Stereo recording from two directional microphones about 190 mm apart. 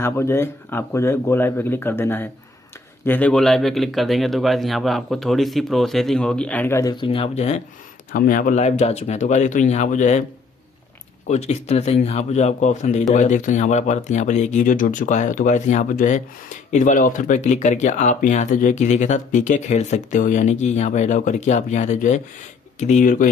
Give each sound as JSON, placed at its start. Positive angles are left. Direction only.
{"t": 0.0, "sound": "speech", "side_deg": 10}
{"t": 8.1, "sound": "speech", "side_deg": 45}
{"t": 11.2, "sound": "speech", "side_deg": 35}